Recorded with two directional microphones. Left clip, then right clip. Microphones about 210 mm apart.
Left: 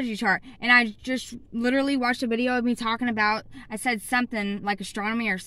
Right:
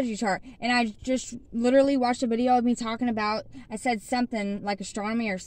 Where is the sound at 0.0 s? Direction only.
15° left (ahead or behind).